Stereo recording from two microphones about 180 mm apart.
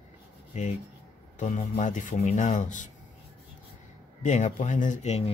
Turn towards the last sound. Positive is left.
turn(degrees=35)  # may be behind; listen again after turning